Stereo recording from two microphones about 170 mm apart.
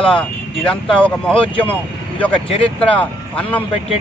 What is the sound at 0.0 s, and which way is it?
Speech, 5° left (ahead or behind).